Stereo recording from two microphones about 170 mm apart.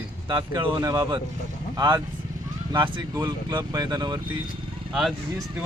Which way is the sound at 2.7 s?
25° right (ahead or behind).